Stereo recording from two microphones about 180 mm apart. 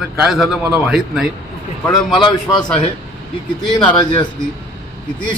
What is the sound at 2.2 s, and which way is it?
Speech, 25° left (ahead or behind).